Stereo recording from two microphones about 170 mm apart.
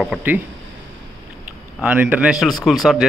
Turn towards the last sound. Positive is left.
turn(degrees=0)  # may be behind; listen again after turning